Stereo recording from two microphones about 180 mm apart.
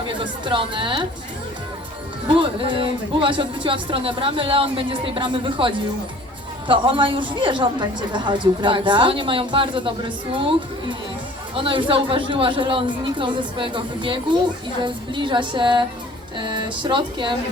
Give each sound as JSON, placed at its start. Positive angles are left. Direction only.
{"t": 0.1, "sound": "speech", "side_deg": -30}
{"t": 2.2, "sound": "speech", "side_deg": -30}